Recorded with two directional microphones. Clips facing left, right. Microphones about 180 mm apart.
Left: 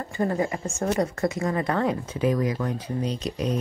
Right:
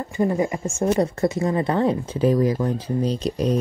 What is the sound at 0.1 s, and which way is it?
Speech, 15° right (ahead or behind).